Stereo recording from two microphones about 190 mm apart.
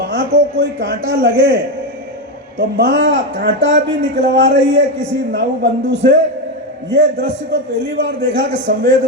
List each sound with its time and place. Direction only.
0.0 s speech: 70° right (ahead or behind)
2.6 s a man's voice: 65° right (ahead or behind)